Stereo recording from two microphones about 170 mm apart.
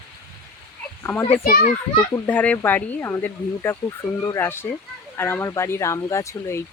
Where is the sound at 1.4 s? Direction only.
60° left (ahead or behind).